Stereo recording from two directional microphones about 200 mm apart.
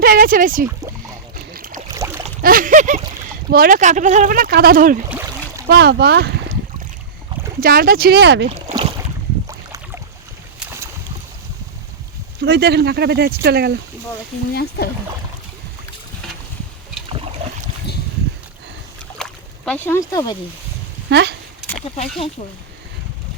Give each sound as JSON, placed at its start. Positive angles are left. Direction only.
{"t": 0.0, "sound": "speech", "side_deg": -45}
{"t": 1.5, "sound": "a sound", "side_deg": -45}
{"t": 2.0, "sound": "a sound", "side_deg": -15}
{"t": 2.4, "sound": "speech", "side_deg": -45}
{"t": 5.6, "sound": "speech", "side_deg": -55}
{"t": 7.6, "sound": "speech", "side_deg": -45}
{"t": 8.7, "sound": "boat", "side_deg": -25}
{"t": 12.4, "sound": "speech", "side_deg": -55}
{"t": 14.5, "sound": "speech", "side_deg": 50}
{"t": 19.2, "sound": "a sound", "side_deg": 5}
{"t": 21.1, "sound": "speech", "side_deg": -60}